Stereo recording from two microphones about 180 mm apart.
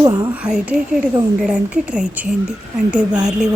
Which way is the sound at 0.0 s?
20° right (ahead or behind).